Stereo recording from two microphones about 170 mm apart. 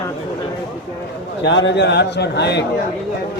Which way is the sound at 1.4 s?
85° left.